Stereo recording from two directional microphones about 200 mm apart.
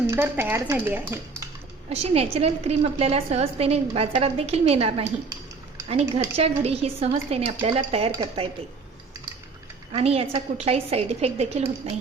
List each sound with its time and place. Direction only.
0.1 s speech: 10° right (ahead or behind)
1.9 s a woman's voice: 30° right (ahead or behind)
9.9 s a woman's voice: 30° right (ahead or behind)